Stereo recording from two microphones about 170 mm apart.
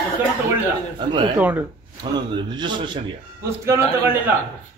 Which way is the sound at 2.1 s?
25° right (ahead or behind).